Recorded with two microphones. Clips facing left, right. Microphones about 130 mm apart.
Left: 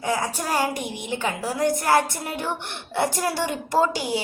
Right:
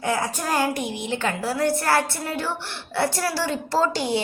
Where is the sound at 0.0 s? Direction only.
15° left (ahead or behind).